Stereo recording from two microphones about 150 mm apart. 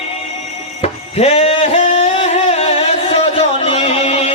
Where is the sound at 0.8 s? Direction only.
45° left (ahead or behind).